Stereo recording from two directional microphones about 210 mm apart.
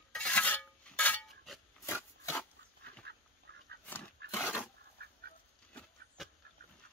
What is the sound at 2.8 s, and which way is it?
Duck, 50° right (ahead or behind).